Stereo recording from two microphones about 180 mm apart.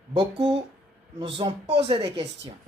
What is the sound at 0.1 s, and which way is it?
Speech, 25° right (ahead or behind).